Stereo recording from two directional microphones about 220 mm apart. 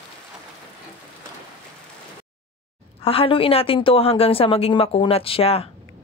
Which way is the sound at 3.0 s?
25° left (ahead or behind).